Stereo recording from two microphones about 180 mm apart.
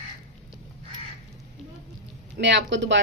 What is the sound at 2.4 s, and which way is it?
Speech, 75° right (ahead or behind).